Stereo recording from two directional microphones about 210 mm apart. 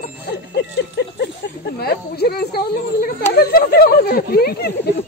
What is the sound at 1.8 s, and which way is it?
Speech, 50° left (ahead or behind).